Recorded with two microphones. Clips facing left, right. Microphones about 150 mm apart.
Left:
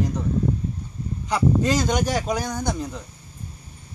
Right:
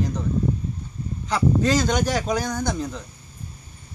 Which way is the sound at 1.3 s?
10° left (ahead or behind).